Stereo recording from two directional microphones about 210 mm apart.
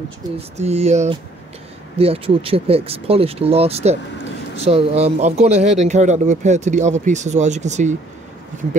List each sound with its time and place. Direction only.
0.6 s speech: 30° right (ahead or behind)